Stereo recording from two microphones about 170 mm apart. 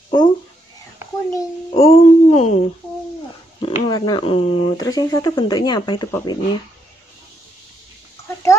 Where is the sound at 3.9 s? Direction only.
25° left (ahead or behind).